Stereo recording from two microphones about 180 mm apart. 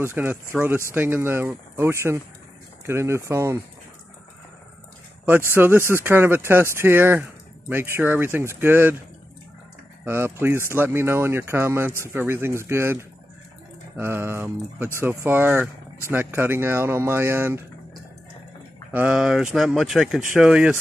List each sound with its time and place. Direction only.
0.0 s speech: 10° right (ahead or behind)
5.5 s speech: 10° right (ahead or behind)
10.0 s speech: 15° right (ahead or behind)
18.9 s speech: 10° right (ahead or behind)